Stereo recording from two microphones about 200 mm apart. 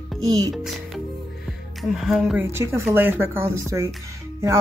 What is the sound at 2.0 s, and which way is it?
Speech, centre (ahead or behind).